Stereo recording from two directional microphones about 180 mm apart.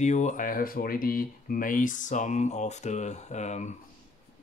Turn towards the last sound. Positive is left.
turn(degrees=40)  # may be behind; listen again after turning